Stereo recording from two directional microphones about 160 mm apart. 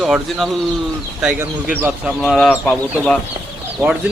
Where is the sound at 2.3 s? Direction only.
5° left (ahead or behind).